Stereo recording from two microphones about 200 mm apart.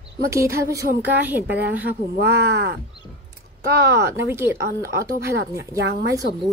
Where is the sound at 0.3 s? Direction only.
15° right (ahead or behind).